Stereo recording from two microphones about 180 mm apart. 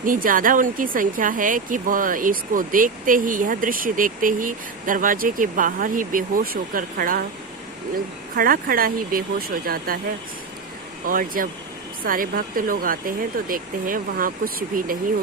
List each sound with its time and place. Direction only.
0.0 s speech: 50° right (ahead or behind)
11.0 s speech: 50° right (ahead or behind)